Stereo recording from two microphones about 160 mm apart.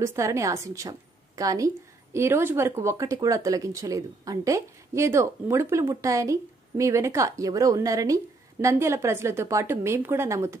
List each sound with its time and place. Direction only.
0.0 s a woman's voice: 20° right (ahead or behind)